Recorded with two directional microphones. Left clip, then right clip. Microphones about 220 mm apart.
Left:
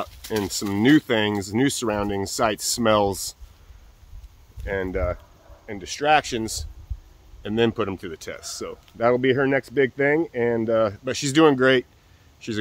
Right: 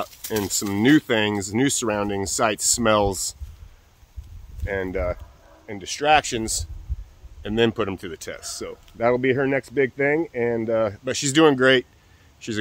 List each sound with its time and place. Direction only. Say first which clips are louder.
0.3 s speech: even; centre (ahead or behind)
4.6 s speech: even; 5° right (ahead or behind)